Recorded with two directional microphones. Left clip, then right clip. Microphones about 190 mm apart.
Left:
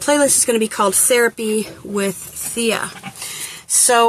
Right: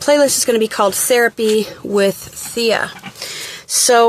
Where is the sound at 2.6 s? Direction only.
35° right (ahead or behind).